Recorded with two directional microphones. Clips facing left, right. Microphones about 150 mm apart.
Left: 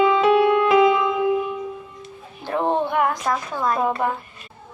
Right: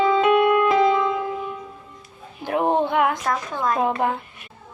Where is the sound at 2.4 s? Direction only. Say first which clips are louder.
Right 1 dB; 15° right (ahead or behind).